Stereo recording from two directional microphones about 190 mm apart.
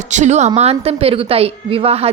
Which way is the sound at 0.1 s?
40° right (ahead or behind).